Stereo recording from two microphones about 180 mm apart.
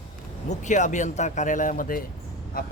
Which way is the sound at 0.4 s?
40° left (ahead or behind).